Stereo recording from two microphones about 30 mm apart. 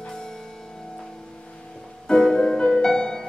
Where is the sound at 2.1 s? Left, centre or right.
Centre.